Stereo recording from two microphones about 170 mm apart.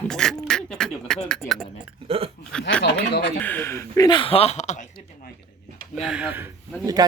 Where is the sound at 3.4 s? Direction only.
10° left (ahead or behind); by 4.9 s 45° left (ahead or behind).